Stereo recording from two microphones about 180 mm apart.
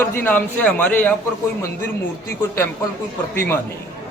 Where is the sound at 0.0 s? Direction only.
10° left (ahead or behind).